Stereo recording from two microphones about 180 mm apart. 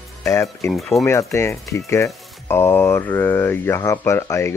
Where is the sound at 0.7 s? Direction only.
5° left (ahead or behind).